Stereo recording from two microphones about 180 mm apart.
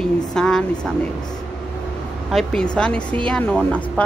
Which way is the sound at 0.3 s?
5° left (ahead or behind).